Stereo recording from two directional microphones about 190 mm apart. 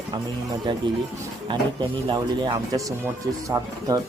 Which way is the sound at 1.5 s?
25° right (ahead or behind).